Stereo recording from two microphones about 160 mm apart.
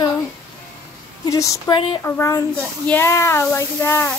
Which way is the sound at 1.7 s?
30° left (ahead or behind).